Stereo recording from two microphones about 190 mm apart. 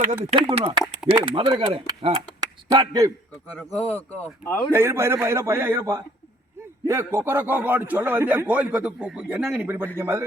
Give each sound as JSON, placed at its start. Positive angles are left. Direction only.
{"t": 0.3, "sound": "speech", "side_deg": -30}
{"t": 3.4, "sound": "speech", "side_deg": 10}
{"t": 4.7, "sound": "a man's voice", "side_deg": -15}